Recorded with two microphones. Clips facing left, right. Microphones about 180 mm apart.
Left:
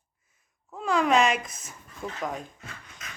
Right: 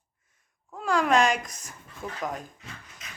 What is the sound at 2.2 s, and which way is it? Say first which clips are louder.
Speech: even; centre (ahead or behind).